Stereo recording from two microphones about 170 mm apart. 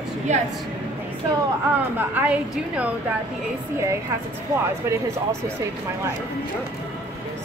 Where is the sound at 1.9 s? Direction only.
10° right (ahead or behind).